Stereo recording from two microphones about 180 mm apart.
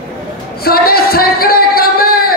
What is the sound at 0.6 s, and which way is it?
Speech, 60° left (ahead or behind).